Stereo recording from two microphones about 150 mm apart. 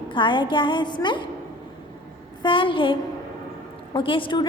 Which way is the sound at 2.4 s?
35° left (ahead or behind).